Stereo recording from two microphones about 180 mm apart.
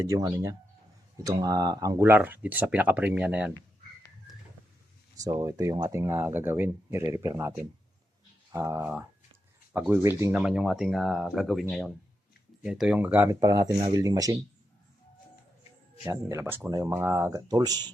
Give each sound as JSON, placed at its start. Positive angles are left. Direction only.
{"t": 0.0, "sound": "speech", "side_deg": -15}
{"t": 5.2, "sound": "speech", "side_deg": -20}
{"t": 12.6, "sound": "speech", "side_deg": -5}
{"t": 16.0, "sound": "speech", "side_deg": -15}